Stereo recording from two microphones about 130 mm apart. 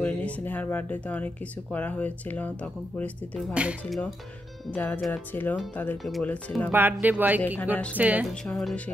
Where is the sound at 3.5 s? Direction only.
10° right (ahead or behind).